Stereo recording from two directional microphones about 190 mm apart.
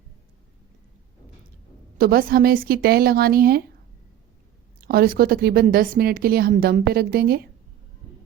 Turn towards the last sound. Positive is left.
turn(degrees=-55)  # may be behind; listen again after turning